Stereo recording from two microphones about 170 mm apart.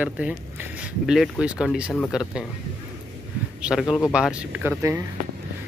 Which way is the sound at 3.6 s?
5° right (ahead or behind).